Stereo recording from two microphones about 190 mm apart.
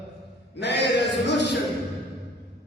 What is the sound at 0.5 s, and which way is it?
Music, 65° left (ahead or behind).